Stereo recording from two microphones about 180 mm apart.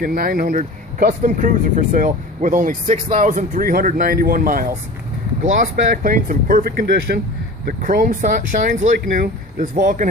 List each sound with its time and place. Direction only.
0.0 s speech: 55° right (ahead or behind)